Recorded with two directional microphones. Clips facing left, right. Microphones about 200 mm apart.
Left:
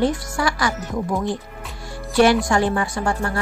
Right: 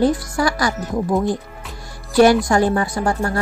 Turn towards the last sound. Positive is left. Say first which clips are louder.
# right 3 dB
turn(degrees=-40)  # may be behind; listen again after turning